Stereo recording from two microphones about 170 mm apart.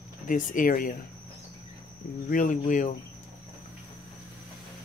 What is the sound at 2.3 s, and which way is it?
Speech, 50° left (ahead or behind).